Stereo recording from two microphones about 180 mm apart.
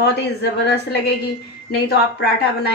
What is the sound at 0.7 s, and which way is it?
A woman's voice, 65° left (ahead or behind).